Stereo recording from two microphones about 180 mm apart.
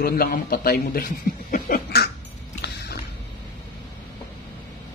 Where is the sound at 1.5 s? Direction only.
60° left (ahead or behind).